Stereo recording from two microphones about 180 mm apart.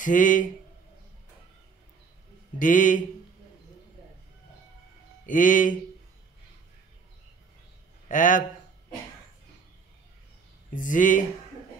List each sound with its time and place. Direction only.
0.0 s speech: 45° left (ahead or behind)
2.6 s speech: 45° left (ahead or behind)
5.2 s speech: 50° left (ahead or behind)
8.1 s speech: 45° left (ahead or behind)
10.7 s speech: 45° left (ahead or behind)